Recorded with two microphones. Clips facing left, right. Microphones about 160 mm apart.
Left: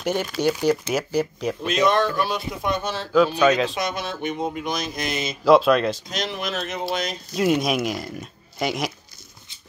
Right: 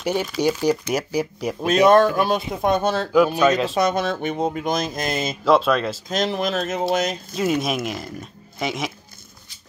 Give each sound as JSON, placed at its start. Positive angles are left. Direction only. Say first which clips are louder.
{"t": 0.0, "sound": "speech", "louder": "right 1 dB", "side_deg": -5}
{"t": 1.7, "sound": "speech", "louder": "right 6 dB", "side_deg": -50}
{"t": 3.4, "sound": "a woman's voice", "louder": "even", "side_deg": 0}
{"t": 3.7, "sound": "speech", "louder": "right 7 dB", "side_deg": -50}
{"t": 5.4, "sound": "a woman's voice", "louder": "left 3 dB", "side_deg": 0}
{"t": 6.0, "sound": "speech", "louder": "right 6 dB", "side_deg": -45}
{"t": 7.3, "sound": "a woman's voice", "louder": "left 2 dB", "side_deg": 0}